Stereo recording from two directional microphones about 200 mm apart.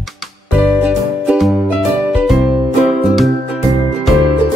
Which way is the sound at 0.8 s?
5° right (ahead or behind).